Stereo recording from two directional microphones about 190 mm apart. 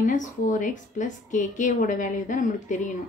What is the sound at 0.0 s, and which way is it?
A woman's voice, 45° left (ahead or behind).